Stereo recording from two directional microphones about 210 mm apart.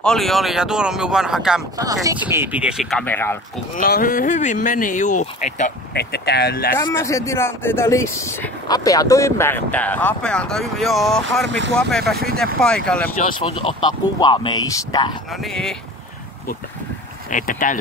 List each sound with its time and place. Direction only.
0.0 s speech: centre (ahead or behind)
1.8 s speech: 15° right (ahead or behind); by 3.3 s 10° left (ahead or behind)
3.7 s speech: 40° left (ahead or behind)
5.9 s speech: 50° left (ahead or behind)
6.8 s speech: 15° left (ahead or behind)
11.4 s speech: 60° right (ahead or behind)
11.7 s speech: centre (ahead or behind)
13.4 s speech: 25° left (ahead or behind)
15.3 s speech: centre (ahead or behind)
17.3 s speech: 40° left (ahead or behind)